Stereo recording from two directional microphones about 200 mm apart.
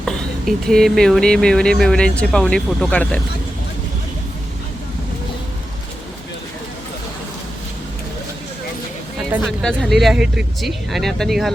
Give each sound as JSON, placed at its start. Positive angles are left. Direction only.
{"t": 0.0, "sound": "speech", "side_deg": 0}
{"t": 9.4, "sound": "speech", "side_deg": 0}